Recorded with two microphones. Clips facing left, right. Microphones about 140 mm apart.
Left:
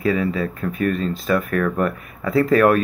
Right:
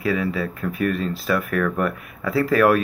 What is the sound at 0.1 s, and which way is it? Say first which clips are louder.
Speech: left 2 dB; 40° left (ahead or behind).